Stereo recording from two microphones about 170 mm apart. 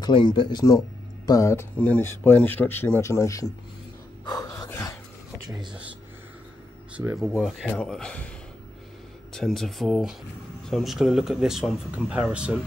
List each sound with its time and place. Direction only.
0.0 s speech: 25° left (ahead or behind)
4.5 s a sound: 10° left (ahead or behind)
5.5 s speech: 25° right (ahead or behind)
7.2 s speech: centre (ahead or behind)
9.3 s speech: 5° left (ahead or behind)